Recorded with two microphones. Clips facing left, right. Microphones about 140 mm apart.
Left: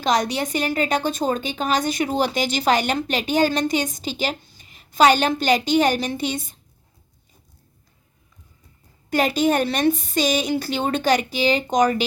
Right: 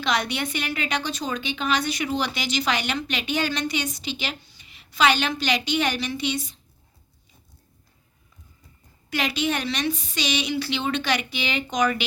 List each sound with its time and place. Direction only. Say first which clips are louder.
0.0 s a woman's voice: left 5 dB; 40° left (ahead or behind)
9.0 s a woman's voice: left 7 dB; 45° left (ahead or behind)